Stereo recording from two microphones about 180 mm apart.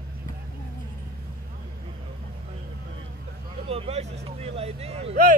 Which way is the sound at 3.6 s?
35° right (ahead or behind).